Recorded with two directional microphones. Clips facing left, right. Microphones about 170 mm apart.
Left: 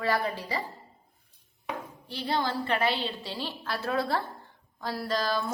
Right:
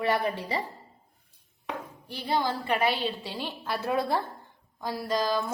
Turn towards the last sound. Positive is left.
turn(degrees=-15)  # may be behind; listen again after turning